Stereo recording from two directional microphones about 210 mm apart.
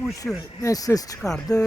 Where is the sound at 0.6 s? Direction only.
15° left (ahead or behind).